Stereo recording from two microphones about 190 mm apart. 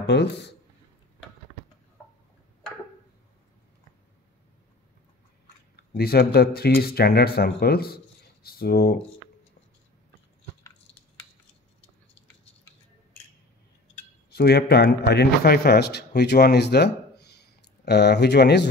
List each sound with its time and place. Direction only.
0.0 s speech: 65° left (ahead or behind)
5.8 s speech: 55° left (ahead or behind)
14.3 s a man's voice: 55° left (ahead or behind)